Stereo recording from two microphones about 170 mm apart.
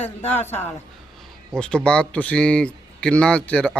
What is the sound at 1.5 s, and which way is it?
Speech, 5° left (ahead or behind).